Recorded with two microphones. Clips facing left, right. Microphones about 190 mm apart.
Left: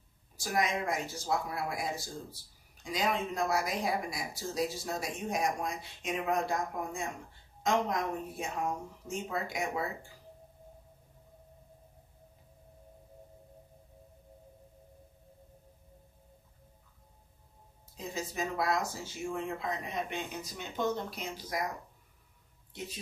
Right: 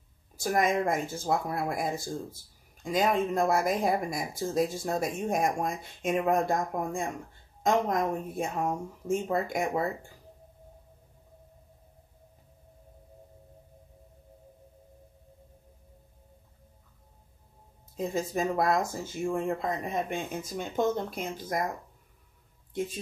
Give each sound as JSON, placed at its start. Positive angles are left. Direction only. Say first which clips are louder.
{"t": 0.4, "sound": "speech", "louder": "right 6 dB", "side_deg": -50}
{"t": 17.9, "sound": "speech", "louder": "right 8 dB", "side_deg": -50}